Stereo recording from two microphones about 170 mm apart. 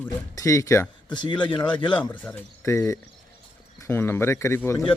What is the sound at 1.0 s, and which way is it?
Speech, 25° left (ahead or behind).